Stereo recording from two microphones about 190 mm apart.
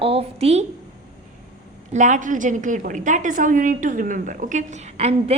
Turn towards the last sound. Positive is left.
turn(degrees=-35)  # may be behind; listen again after turning